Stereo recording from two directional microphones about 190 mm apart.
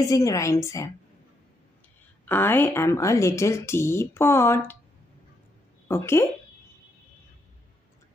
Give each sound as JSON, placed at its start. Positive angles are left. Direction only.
{"t": 0.0, "sound": "a woman's voice", "side_deg": 15}
{"t": 2.2, "sound": "a woman's voice", "side_deg": 10}
{"t": 5.9, "sound": "speech", "side_deg": 15}